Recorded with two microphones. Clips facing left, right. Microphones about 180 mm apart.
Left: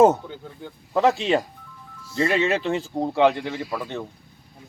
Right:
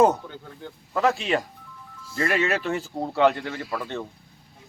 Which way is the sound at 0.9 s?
25° left (ahead or behind).